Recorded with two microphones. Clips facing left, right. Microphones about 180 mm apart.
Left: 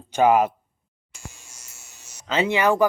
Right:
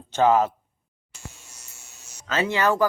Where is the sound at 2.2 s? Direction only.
20° left (ahead or behind).